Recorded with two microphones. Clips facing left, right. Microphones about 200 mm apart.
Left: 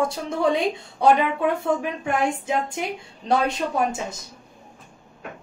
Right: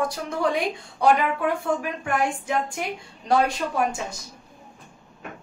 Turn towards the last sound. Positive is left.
turn(degrees=20)  # may be behind; listen again after turning